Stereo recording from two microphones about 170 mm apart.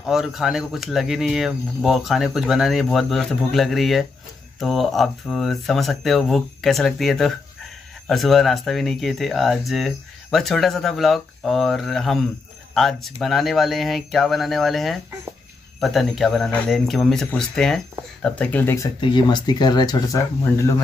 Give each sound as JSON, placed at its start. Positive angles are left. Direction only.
{"t": 0.0, "sound": "speech", "side_deg": -5}
{"t": 18.9, "sound": "speech", "side_deg": 25}